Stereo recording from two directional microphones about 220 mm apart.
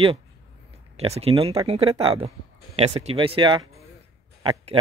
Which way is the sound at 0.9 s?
30° right (ahead or behind).